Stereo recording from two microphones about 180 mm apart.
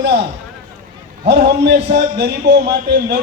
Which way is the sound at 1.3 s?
70° right (ahead or behind).